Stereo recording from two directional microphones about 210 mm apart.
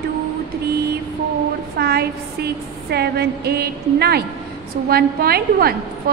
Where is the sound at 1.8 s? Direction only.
50° right (ahead or behind).